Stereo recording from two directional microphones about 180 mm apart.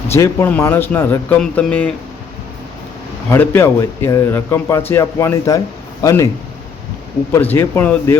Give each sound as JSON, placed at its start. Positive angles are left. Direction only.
{"t": 0.1, "sound": "speech", "side_deg": 15}
{"t": 3.3, "sound": "speech", "side_deg": 10}
{"t": 7.3, "sound": "speech", "side_deg": 10}